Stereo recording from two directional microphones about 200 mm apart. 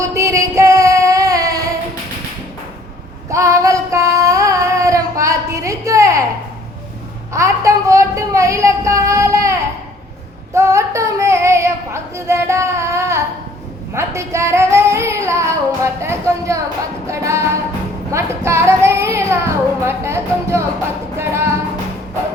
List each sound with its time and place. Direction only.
0.0 s singing: 15° right (ahead or behind)
3.2 s child singing: 15° right (ahead or behind)
7.3 s a sound: 15° right (ahead or behind)
10.5 s female singing: 15° right (ahead or behind)
13.9 s singing: 15° right (ahead or behind)
17.1 s music: 15° right (ahead or behind)
18.1 s child singing: 15° right (ahead or behind)